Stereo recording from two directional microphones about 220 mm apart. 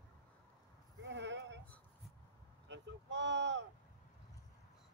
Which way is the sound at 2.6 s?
55° right (ahead or behind).